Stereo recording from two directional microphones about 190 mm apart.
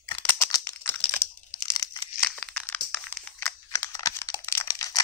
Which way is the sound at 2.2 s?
5° left (ahead or behind).